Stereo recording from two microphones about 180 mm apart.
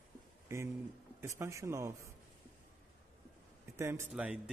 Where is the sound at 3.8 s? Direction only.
15° right (ahead or behind).